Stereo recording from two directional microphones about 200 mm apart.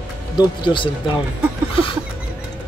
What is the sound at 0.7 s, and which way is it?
Speech, 25° left (ahead or behind).